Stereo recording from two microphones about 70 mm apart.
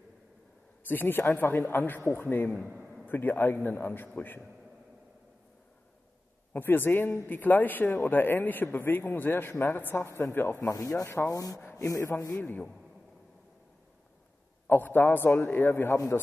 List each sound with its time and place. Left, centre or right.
0.8 s speech: left
6.5 s a man's voice: left
10.6 s speech: left
12.4 s speech: left
14.7 s speech: left